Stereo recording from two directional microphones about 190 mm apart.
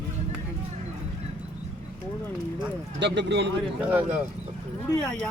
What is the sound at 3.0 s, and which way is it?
Speech, 65° right (ahead or behind).